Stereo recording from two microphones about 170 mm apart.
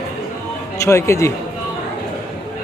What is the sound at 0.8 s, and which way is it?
Speech, 15° left (ahead or behind).